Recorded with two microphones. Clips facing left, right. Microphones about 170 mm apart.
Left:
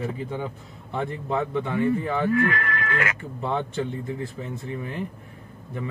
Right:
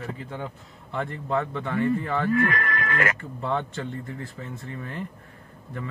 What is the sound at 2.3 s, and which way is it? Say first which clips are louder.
Speech: left 1 dB; 45° right (ahead or behind).